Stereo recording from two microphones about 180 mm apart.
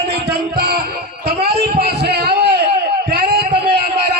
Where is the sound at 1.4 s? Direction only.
65° right (ahead or behind).